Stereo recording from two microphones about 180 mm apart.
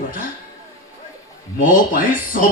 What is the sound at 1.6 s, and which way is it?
Speech, 50° left (ahead or behind).